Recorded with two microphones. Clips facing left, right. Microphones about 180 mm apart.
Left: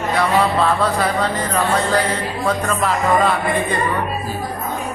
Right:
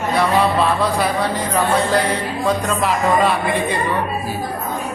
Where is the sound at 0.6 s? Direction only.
15° right (ahead or behind).